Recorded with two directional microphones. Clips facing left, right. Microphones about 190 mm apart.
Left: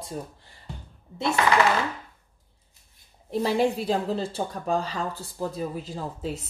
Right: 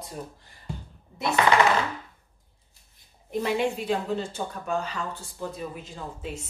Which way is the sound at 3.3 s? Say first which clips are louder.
Left 3 dB; 35° left (ahead or behind).